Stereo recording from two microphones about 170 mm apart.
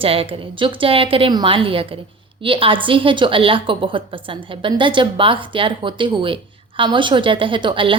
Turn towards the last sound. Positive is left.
turn(degrees=-30)  # may be behind; listen again after turning